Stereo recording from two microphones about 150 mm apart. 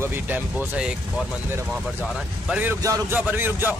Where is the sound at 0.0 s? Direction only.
10° right (ahead or behind).